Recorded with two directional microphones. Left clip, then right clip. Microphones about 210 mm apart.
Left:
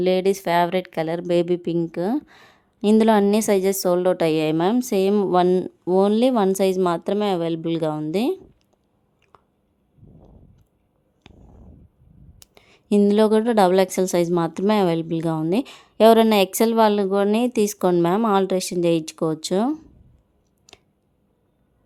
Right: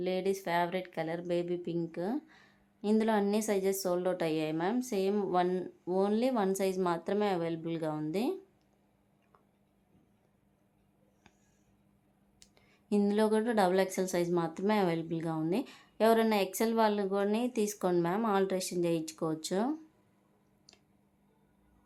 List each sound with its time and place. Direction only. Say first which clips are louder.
0.0 s a woman's voice: left 13 dB; 50° left (ahead or behind)
9.3 s chewing: left 13 dB; 40° left (ahead or behind)
11.3 s a sound: left 14 dB; 40° left (ahead or behind)
12.4 s a woman's voice: left 11 dB; 40° left (ahead or behind)